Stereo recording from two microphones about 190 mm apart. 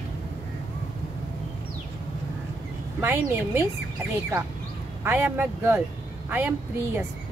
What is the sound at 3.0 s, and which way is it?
Speech, 10° right (ahead or behind).